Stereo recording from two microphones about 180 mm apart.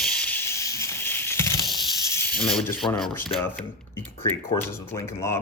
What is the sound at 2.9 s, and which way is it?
Speech, centre (ahead or behind).